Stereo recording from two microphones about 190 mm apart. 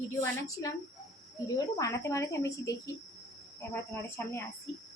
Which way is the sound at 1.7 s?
15° left (ahead or behind).